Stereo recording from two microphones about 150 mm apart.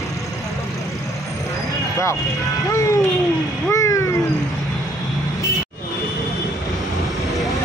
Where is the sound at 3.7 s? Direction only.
20° left (ahead or behind).